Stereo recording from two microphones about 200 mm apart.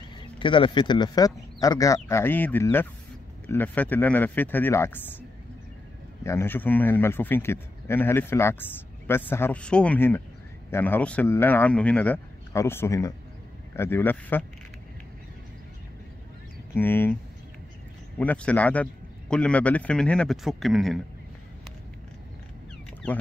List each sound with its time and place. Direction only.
0.4 s a man's voice: 25° left (ahead or behind)
6.2 s a man's voice: 10° left (ahead or behind)
16.7 s a man's voice: 10° left (ahead or behind)